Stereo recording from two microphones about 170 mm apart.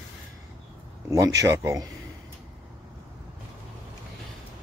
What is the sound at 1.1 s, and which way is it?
Speech, 20° right (ahead or behind).